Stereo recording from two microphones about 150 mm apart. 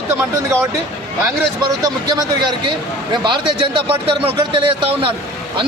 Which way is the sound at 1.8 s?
25° right (ahead or behind).